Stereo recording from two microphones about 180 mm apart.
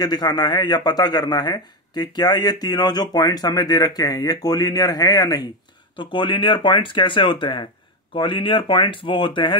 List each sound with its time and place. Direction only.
0.0 s speech: 20° left (ahead or behind)